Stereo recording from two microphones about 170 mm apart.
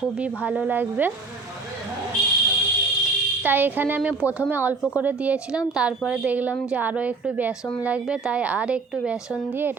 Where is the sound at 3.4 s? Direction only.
10° right (ahead or behind).